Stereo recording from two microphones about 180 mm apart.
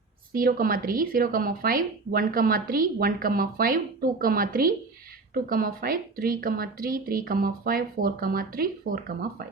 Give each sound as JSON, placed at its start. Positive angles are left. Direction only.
{"t": 0.3, "sound": "a woman's voice", "side_deg": -50}